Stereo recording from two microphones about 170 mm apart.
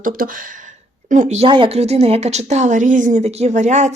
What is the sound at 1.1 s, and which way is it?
A woman's voice, 45° right (ahead or behind).